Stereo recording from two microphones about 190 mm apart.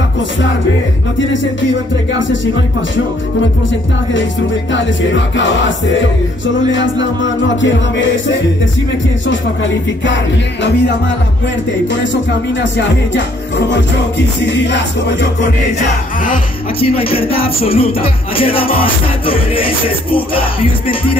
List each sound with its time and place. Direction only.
4.7 s music: 75° left (ahead or behind)
10.6 s music: 65° left (ahead or behind)
12.7 s music: 70° left (ahead or behind)
16.8 s music: 30° left (ahead or behind)